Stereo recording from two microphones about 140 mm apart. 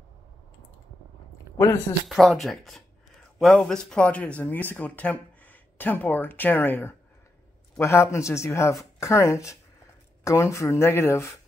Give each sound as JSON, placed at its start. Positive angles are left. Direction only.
{"t": 2.0, "sound": "speech", "side_deg": 0}